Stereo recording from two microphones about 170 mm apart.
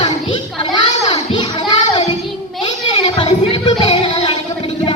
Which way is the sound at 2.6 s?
30° left (ahead or behind).